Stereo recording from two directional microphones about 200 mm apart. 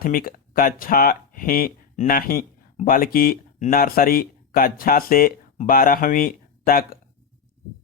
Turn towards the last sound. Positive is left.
turn(degrees=45)  # may be behind; listen again after turning